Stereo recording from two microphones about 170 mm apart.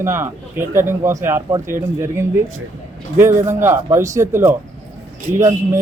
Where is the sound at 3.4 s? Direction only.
15° right (ahead or behind).